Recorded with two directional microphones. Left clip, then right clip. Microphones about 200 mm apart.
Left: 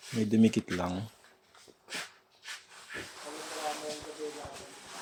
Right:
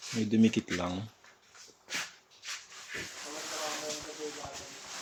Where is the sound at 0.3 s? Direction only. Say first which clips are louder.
Left 1 dB; 20° left (ahead or behind).